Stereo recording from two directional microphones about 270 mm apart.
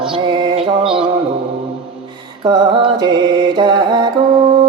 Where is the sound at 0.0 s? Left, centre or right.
Centre.